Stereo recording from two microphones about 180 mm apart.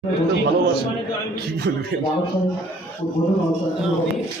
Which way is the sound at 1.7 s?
70° right (ahead or behind).